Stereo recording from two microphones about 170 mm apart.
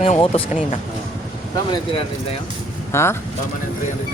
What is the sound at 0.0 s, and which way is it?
Speech, 35° left (ahead or behind).